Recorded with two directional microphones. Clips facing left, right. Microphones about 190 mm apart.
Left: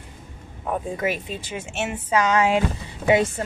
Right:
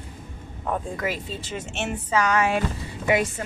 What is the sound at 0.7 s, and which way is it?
A woman's voice, 10° left (ahead or behind).